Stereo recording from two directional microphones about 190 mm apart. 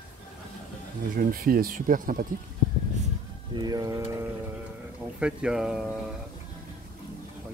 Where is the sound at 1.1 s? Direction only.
50° right (ahead or behind).